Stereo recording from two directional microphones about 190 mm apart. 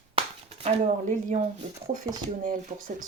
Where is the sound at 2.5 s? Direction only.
45° right (ahead or behind).